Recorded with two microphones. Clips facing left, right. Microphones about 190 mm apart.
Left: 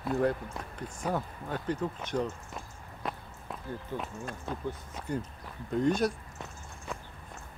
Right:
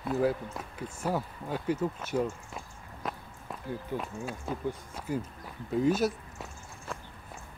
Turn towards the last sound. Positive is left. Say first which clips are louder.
# right 1 dB
turn(degrees=-5)  # may be behind; listen again after turning